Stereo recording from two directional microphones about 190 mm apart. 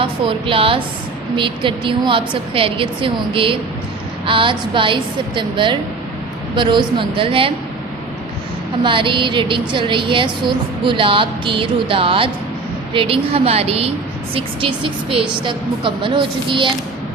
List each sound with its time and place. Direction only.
0.0 s a woman's voice: 30° right (ahead or behind)
8.8 s a woman's voice: 25° right (ahead or behind)